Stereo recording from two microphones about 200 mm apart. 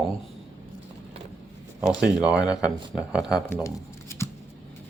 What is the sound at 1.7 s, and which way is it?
Speech, 5° right (ahead or behind).